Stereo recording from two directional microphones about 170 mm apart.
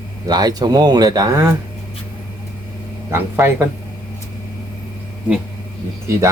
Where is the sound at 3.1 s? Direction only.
15° right (ahead or behind).